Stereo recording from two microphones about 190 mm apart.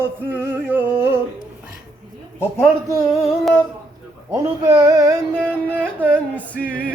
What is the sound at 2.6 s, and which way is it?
Music, 15° right (ahead or behind).